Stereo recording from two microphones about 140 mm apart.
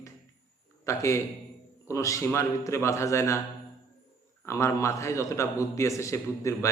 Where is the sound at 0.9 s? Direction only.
20° left (ahead or behind).